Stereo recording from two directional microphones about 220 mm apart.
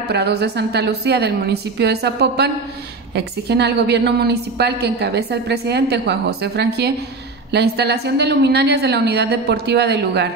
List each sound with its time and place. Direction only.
0.1 s a woman's voice: 50° right (ahead or behind)